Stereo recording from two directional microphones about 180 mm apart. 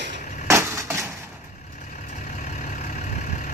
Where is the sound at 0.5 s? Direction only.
15° right (ahead or behind).